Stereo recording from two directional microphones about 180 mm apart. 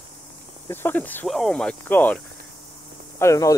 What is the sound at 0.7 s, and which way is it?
Speech, 10° left (ahead or behind).